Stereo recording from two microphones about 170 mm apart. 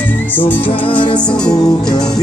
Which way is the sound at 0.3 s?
10° left (ahead or behind).